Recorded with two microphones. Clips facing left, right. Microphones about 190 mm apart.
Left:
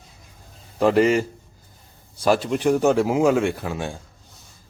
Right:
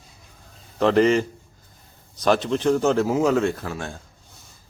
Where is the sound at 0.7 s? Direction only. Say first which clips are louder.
Even; 10° left (ahead or behind).